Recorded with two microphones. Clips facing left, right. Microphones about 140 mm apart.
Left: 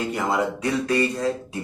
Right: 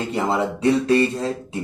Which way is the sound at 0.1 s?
25° right (ahead or behind).